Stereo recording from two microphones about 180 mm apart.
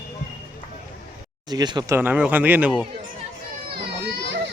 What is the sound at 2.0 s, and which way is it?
Speech, 10° right (ahead or behind).